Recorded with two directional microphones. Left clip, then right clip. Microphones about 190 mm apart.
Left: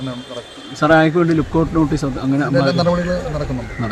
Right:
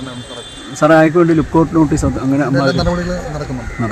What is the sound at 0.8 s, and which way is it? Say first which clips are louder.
A man's voice: right 4 dB; 55° right (ahead or behind).